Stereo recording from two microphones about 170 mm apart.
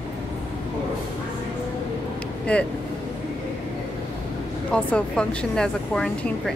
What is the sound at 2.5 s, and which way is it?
Speech, 10° left (ahead or behind).